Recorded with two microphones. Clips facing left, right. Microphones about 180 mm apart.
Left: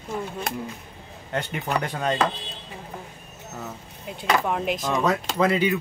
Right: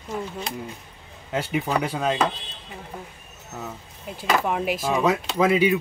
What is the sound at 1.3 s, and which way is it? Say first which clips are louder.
Speech: right 2 dB; 5° right (ahead or behind).